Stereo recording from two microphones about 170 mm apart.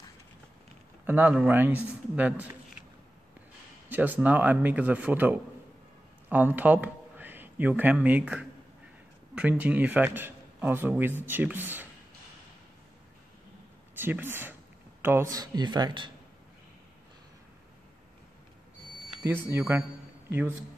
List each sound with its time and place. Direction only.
1.0 s a man's voice: 10° right (ahead or behind)
3.9 s a man's voice: 10° right (ahead or behind)
13.9 s a sound: 10° right (ahead or behind)
15.3 s speech: 25° right (ahead or behind)
19.2 s a man's voice: 15° right (ahead or behind)